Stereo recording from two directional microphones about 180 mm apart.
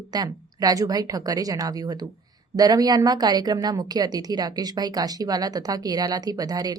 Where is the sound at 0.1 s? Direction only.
20° right (ahead or behind).